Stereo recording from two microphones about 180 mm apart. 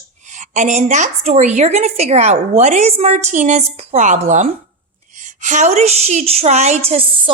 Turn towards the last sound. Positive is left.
turn(degrees=-35)  # may be behind; listen again after turning